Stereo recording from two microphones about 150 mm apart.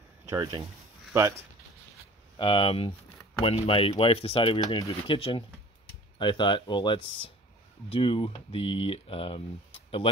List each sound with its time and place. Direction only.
0.3 s speech: 20° right (ahead or behind)
2.3 s speech: 35° left (ahead or behind)